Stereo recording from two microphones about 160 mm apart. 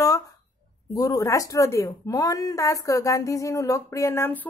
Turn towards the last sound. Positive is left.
turn(degrees=15)  # may be behind; listen again after turning